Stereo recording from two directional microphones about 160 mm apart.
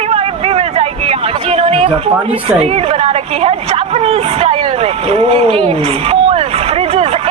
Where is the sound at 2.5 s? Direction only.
40° right (ahead or behind).